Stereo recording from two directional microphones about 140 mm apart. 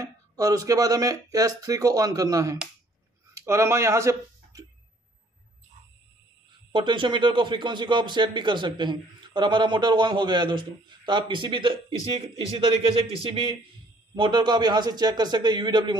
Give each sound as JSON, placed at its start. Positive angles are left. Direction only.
{"t": 0.0, "sound": "speech", "side_deg": -25}
{"t": 6.7, "sound": "a man's voice", "side_deg": -35}